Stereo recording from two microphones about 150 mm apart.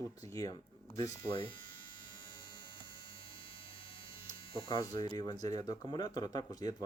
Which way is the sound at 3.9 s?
35° left (ahead or behind).